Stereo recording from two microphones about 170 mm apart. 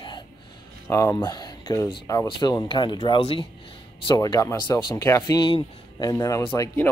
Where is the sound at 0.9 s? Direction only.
15° left (ahead or behind).